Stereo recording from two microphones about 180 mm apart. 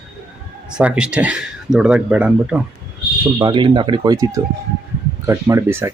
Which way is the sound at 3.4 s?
25° right (ahead or behind).